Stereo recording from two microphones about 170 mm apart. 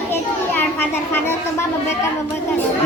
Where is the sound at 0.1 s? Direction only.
10° left (ahead or behind).